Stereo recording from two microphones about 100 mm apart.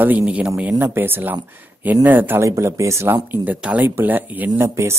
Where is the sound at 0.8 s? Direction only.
20° right (ahead or behind).